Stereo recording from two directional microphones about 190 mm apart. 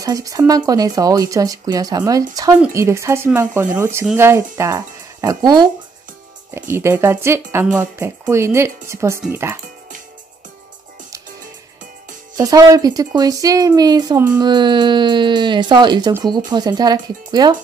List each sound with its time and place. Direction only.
0.0 s speech: 20° right (ahead or behind)
12.4 s speech: 20° right (ahead or behind)